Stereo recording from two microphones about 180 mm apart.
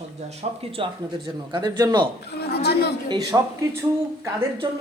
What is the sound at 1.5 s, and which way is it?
Speech, 25° right (ahead or behind).